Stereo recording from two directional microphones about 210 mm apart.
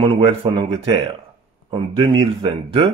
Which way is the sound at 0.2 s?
25° right (ahead or behind).